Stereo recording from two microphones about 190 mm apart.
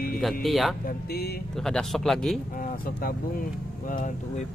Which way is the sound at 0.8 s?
55° left (ahead or behind).